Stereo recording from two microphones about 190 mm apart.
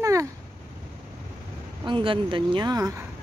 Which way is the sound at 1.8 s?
25° right (ahead or behind).